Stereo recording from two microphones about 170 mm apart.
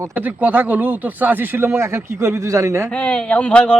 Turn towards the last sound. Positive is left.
turn(degrees=5)  # may be behind; listen again after turning